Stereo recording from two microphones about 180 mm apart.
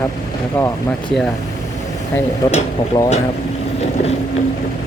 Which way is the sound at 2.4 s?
20° left (ahead or behind).